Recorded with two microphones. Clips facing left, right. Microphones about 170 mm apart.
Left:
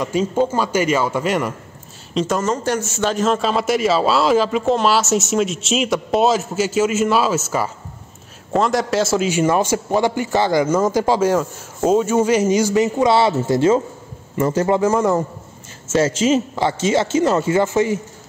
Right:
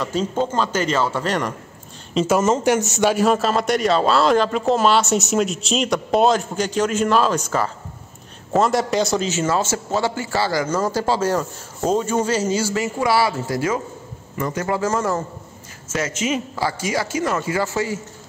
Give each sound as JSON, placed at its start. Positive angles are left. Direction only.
{"t": 0.0, "sound": "speech", "side_deg": 10}
{"t": 2.1, "sound": "speech", "side_deg": -5}
{"t": 2.4, "sound": "a man's voice", "side_deg": -15}
{"t": 14.8, "sound": "speech", "side_deg": 15}
{"t": 15.9, "sound": "speech", "side_deg": 30}